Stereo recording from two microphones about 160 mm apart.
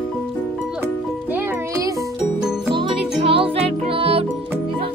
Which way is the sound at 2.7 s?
35° right (ahead or behind).